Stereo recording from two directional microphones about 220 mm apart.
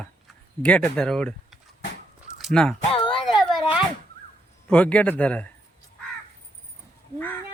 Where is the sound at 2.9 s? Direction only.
25° left (ahead or behind).